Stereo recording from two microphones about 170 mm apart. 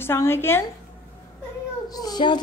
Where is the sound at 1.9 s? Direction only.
25° left (ahead or behind).